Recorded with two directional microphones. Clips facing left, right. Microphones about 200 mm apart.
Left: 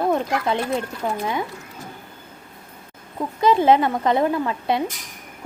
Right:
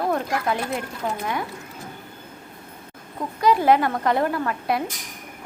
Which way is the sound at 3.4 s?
25° left (ahead or behind).